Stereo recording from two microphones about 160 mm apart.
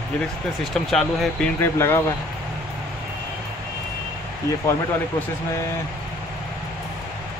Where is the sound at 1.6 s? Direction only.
15° left (ahead or behind).